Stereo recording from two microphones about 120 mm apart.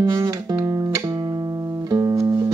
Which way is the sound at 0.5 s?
30° right (ahead or behind).